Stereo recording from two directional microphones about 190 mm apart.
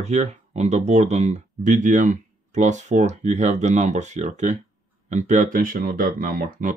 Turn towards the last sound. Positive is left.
turn(degrees=-50)  # may be behind; listen again after turning